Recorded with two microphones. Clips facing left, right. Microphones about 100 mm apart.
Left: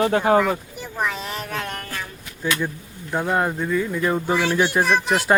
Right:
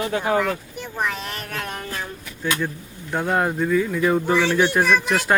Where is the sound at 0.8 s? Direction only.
Centre (ahead or behind).